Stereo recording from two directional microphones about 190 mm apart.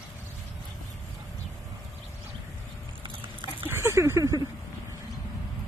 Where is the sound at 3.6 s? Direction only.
10° right (ahead or behind).